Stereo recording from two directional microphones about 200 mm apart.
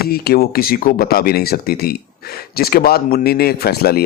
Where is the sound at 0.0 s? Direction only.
50° left (ahead or behind).